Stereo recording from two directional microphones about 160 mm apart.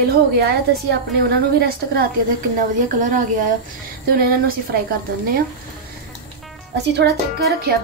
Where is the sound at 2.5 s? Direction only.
55° right (ahead or behind).